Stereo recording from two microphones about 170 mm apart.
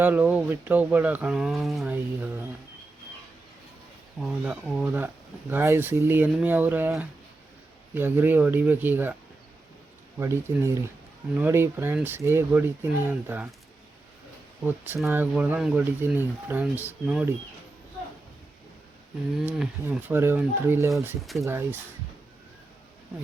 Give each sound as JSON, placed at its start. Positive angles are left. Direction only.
{"t": 0.0, "sound": "speech", "side_deg": -10}
{"t": 4.2, "sound": "speech", "side_deg": 0}
{"t": 10.2, "sound": "speech", "side_deg": -15}
{"t": 14.6, "sound": "speech", "side_deg": -10}
{"t": 19.5, "sound": "speech", "side_deg": -5}
{"t": 21.2, "sound": "speech", "side_deg": 0}
{"t": 21.4, "sound": "speech", "side_deg": -15}